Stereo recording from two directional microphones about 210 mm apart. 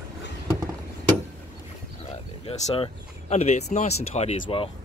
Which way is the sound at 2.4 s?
25° left (ahead or behind).